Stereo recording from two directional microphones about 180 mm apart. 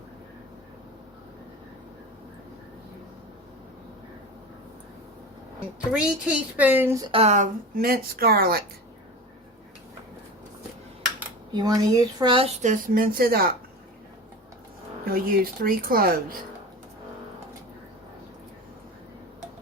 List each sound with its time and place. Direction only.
5.9 s a woman's voice: 5° right (ahead or behind)
7.1 s speech: 35° right (ahead or behind); by 8.6 s 55° right (ahead or behind)
11.5 s speech: 20° right (ahead or behind)
12.6 s speech: 50° right (ahead or behind)
15.0 s speech: 55° right (ahead or behind)